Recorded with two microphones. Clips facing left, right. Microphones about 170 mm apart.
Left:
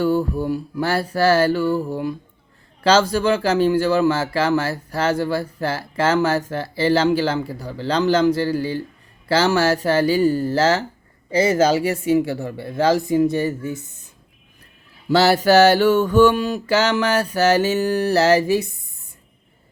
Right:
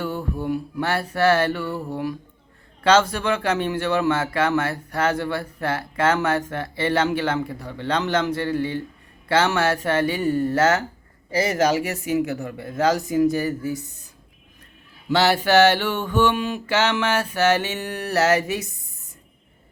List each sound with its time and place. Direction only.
0.0 s speech: 35° left (ahead or behind)
15.1 s speech: 40° left (ahead or behind)